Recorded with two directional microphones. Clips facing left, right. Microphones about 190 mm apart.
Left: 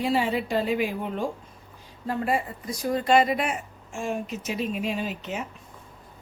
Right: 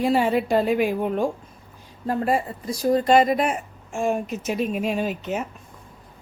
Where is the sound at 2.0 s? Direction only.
40° right (ahead or behind).